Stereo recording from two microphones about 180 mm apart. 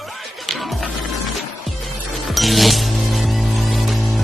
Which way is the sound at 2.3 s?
Centre (ahead or behind).